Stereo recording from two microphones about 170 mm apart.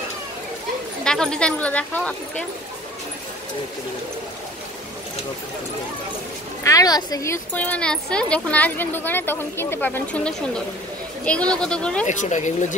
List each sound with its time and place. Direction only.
1.0 s speech: 5° left (ahead or behind)
6.6 s speech: 20° left (ahead or behind)
12.1 s speech: 45° left (ahead or behind)